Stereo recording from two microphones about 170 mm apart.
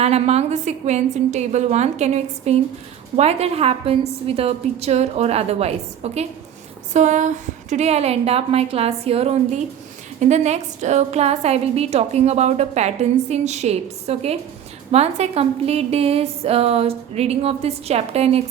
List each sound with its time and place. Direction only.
0.0 s a woman's voice: 40° right (ahead or behind)